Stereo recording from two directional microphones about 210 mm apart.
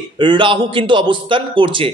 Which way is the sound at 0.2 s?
25° right (ahead or behind).